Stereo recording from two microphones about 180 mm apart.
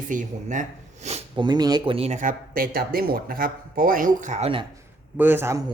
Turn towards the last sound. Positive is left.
turn(degrees=-15)  # may be behind; listen again after turning